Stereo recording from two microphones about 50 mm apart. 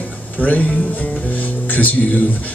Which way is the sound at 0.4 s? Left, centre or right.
Left.